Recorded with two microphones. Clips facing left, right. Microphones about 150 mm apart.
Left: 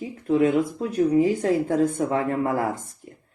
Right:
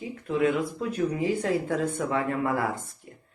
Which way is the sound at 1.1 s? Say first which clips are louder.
Left 6 dB; 45° left (ahead or behind).